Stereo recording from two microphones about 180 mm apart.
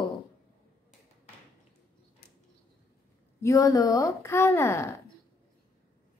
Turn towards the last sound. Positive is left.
turn(degrees=15)  # may be behind; listen again after turning